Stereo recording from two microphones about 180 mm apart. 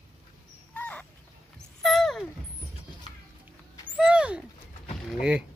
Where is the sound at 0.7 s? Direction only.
10° left (ahead or behind).